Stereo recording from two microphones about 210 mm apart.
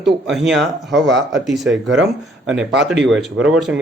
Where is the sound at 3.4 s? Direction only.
5° right (ahead or behind).